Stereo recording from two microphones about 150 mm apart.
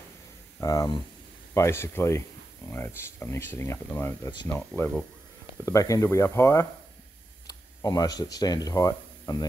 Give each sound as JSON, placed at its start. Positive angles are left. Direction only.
{"t": 0.6, "sound": "speech", "side_deg": 20}